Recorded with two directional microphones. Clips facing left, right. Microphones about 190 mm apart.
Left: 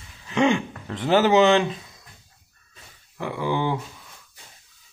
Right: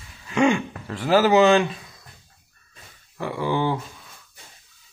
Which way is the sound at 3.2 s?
15° left (ahead or behind).